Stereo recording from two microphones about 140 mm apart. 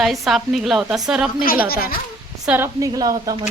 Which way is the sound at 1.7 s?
90° left.